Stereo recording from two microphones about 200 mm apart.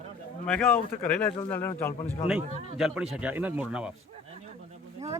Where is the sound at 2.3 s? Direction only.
5° right (ahead or behind).